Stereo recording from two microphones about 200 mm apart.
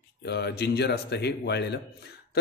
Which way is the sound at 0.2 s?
55° left (ahead or behind).